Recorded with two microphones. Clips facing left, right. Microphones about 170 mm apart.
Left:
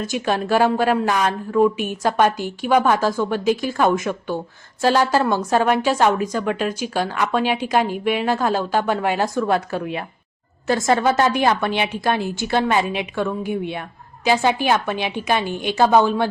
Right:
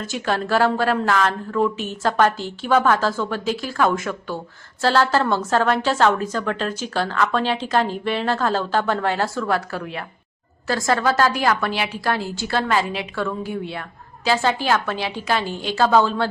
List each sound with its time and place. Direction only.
0.0 s a woman's voice: 15° left (ahead or behind)